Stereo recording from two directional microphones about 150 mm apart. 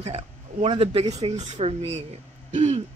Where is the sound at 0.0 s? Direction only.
45° right (ahead or behind).